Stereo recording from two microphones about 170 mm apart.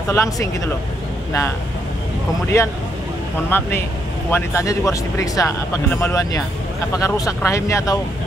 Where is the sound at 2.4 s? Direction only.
15° left (ahead or behind).